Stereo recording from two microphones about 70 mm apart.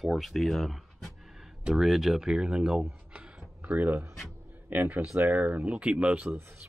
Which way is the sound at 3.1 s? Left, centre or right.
Right.